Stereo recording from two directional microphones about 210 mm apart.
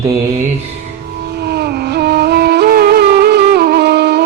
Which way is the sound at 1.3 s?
50° right (ahead or behind).